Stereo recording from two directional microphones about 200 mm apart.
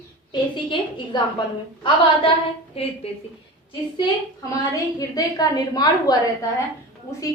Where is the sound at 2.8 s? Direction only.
30° left (ahead or behind).